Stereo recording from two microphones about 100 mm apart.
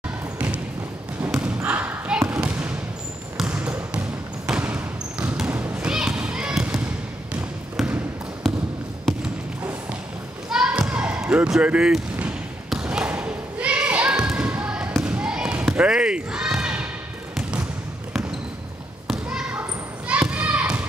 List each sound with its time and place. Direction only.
1.6 s basketball bounce: 20° right (ahead or behind)
2.3 s a sound: 10° right (ahead or behind)
3.3 s trickle: 10° right (ahead or behind)
4.5 s basketball bounce: 15° right (ahead or behind)
5.5 s thump: 20° right (ahead or behind)
5.9 s a sound: 10° right (ahead or behind)
10.5 s basketball bounce: 10° right (ahead or behind)
19.0 s basketball bounce: 10° right (ahead or behind)